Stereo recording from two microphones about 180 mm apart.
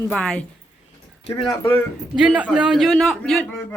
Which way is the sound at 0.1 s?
5° left (ahead or behind).